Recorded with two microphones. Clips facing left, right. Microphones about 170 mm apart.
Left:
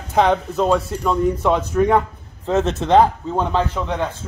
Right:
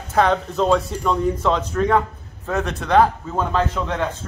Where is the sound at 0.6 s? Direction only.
5° left (ahead or behind).